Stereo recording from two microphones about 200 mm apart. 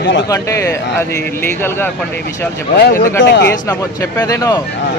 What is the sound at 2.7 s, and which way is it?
Speech, 50° left (ahead or behind).